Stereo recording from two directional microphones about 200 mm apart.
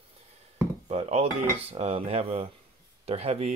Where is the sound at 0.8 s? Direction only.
30° right (ahead or behind).